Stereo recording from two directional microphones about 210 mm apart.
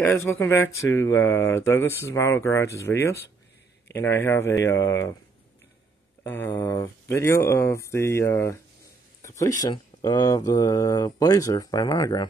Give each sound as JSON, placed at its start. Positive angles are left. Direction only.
{"t": 0.0, "sound": "speech", "side_deg": 10}
{"t": 6.2, "sound": "speech", "side_deg": 10}
{"t": 9.2, "sound": "a sound", "side_deg": 15}
{"t": 9.6, "sound": "speech", "side_deg": 20}